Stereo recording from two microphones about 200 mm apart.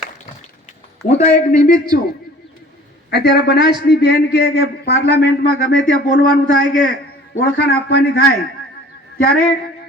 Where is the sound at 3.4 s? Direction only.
55° left (ahead or behind).